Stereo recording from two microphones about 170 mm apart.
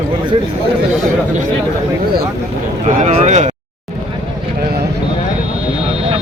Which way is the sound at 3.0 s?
45° right (ahead or behind).